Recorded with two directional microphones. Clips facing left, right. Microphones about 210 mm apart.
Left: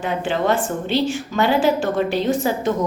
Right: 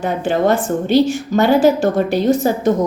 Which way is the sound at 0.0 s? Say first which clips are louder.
Right 5 dB; 40° right (ahead or behind).